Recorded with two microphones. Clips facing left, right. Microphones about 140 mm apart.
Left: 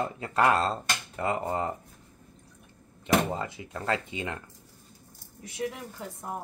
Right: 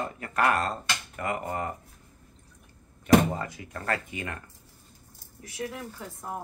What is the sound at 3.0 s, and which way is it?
A child's voice, 20° left (ahead or behind).